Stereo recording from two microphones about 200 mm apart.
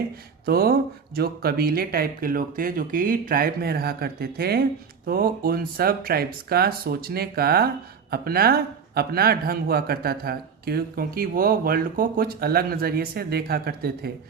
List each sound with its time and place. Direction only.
0.4 s a man's voice: 50° right (ahead or behind)